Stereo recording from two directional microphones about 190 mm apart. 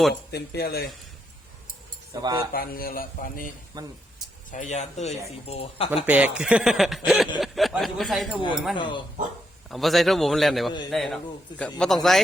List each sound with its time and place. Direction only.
0.1 s speech: 60° left (ahead or behind)
2.2 s speech: 20° right (ahead or behind)
2.5 s speech: 50° left (ahead or behind)
3.7 s speech: 20° right (ahead or behind)
4.5 s speech: 40° left (ahead or behind)
6.1 s a man's voice: 5° right (ahead or behind)
8.7 s speech: 25° left (ahead or behind)
9.6 s a man's voice: centre (ahead or behind)